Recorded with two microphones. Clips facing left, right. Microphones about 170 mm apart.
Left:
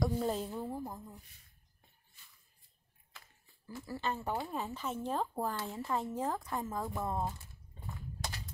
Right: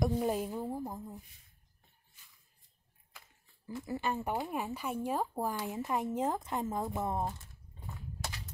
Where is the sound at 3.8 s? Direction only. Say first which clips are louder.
Right 2 dB; 15° right (ahead or behind).